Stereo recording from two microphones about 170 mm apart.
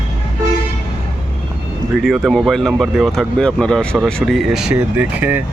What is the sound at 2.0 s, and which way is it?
Speech, centre (ahead or behind).